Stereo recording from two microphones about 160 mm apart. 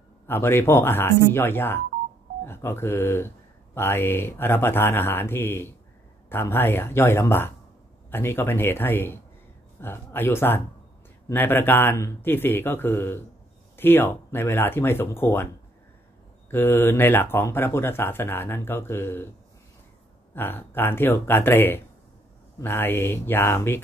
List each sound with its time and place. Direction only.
0.3 s speech: 15° left (ahead or behind)
16.4 s speech: 15° left (ahead or behind)
20.3 s speech: 15° left (ahead or behind)